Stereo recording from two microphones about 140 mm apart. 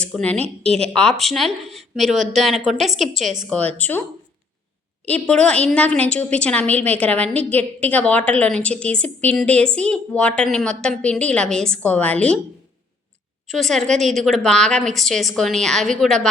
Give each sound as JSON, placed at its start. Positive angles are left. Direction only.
{"t": 0.0, "sound": "a woman's voice", "side_deg": 5}
{"t": 0.4, "sound": "a woman's voice", "side_deg": -45}
{"t": 1.2, "sound": "a woman's voice", "side_deg": 0}
{"t": 3.2, "sound": "a woman's voice", "side_deg": -60}
{"t": 3.5, "sound": "a woman's voice", "side_deg": 10}
{"t": 5.0, "sound": "a woman's voice", "side_deg": 10}
{"t": 13.5, "sound": "a woman's voice", "side_deg": 0}